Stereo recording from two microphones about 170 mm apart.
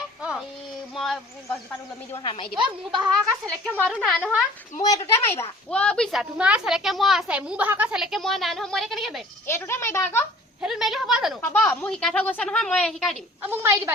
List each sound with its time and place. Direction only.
0.2 s a sound: 5° right (ahead or behind)
0.9 s insect: centre (ahead or behind)
1.5 s a woman's voice: 15° left (ahead or behind)
2.6 s a woman's voice: 25° right (ahead or behind)
3.9 s a woman's voice: 5° left (ahead or behind)
4.8 s a woman's voice: 20° left (ahead or behind); by 9.2 s centre (ahead or behind)
9.5 s a woman's voice: 15° left (ahead or behind)
10.6 s a woman's voice: centre (ahead or behind)
11.3 s a woman's voice: 10° left (ahead or behind)
13.4 s a woman's voice: 15° right (ahead or behind)